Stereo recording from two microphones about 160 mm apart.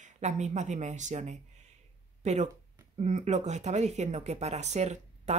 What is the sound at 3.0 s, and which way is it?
Speech, 45° right (ahead or behind).